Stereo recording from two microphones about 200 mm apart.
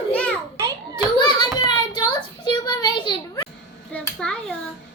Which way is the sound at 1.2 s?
20° left (ahead or behind).